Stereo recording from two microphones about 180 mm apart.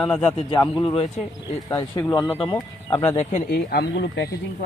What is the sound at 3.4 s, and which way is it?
Speech, 60° left (ahead or behind).